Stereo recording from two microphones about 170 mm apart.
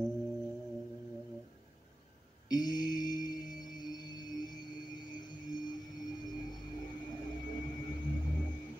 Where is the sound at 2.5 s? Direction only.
25° left (ahead or behind).